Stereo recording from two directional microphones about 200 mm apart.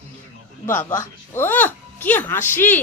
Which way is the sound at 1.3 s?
10° left (ahead or behind).